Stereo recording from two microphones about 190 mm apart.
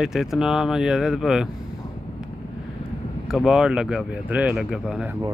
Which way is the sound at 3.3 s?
Centre (ahead or behind).